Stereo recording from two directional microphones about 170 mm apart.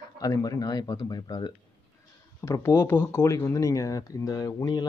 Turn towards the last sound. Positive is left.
turn(degrees=20)  # may be behind; listen again after turning